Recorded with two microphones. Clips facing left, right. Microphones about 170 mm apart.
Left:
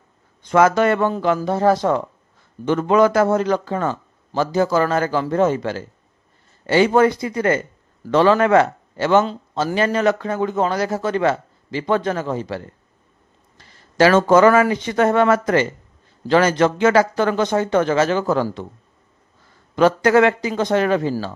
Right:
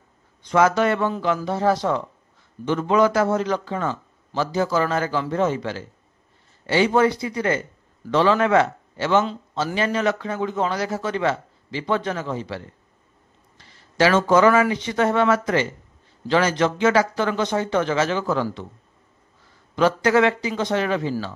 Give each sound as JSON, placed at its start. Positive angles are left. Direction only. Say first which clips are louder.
{"t": 0.4, "sound": "a man's voice", "louder": "left 3 dB", "side_deg": 50}
{"t": 19.7, "sound": "a man's voice", "louder": "left 4 dB", "side_deg": 50}